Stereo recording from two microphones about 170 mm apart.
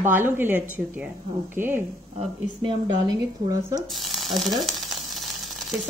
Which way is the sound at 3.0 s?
20° right (ahead or behind).